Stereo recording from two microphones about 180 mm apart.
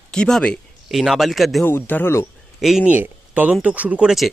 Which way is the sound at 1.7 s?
10° left (ahead or behind).